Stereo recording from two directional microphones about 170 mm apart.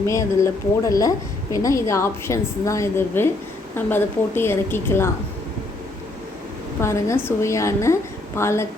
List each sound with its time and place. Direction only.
0.1 s a woman's voice: 20° left (ahead or behind)
6.8 s a woman's voice: 15° left (ahead or behind)